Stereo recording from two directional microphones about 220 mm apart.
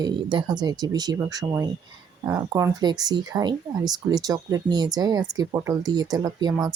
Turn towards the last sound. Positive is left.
turn(degrees=-20)  # may be behind; listen again after turning